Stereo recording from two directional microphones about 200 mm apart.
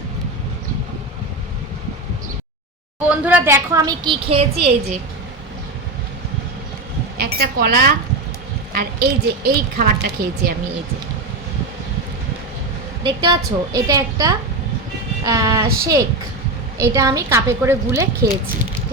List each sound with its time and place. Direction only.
3.1 s a woman's voice: 10° right (ahead or behind); by 4.7 s 30° right (ahead or behind)
7.2 s a woman's voice: 50° right (ahead or behind)
13.0 s a woman's voice: 20° right (ahead or behind)